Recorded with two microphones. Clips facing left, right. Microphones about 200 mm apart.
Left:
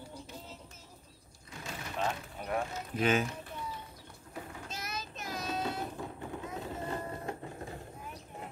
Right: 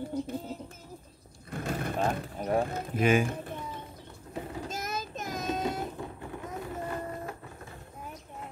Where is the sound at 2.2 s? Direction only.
35° right (ahead or behind).